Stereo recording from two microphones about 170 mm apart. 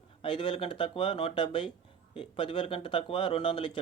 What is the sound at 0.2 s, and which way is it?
Speech, 30° left (ahead or behind).